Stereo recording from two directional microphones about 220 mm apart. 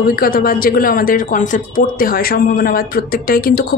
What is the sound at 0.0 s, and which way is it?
A man's voice, 40° left (ahead or behind).